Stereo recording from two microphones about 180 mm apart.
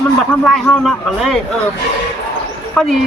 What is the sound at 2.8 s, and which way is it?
Speech, centre (ahead or behind).